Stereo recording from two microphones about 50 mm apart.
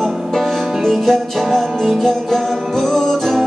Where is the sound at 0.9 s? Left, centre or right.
Centre.